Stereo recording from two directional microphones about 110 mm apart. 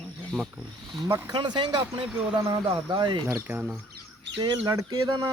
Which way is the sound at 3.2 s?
20° right (ahead or behind).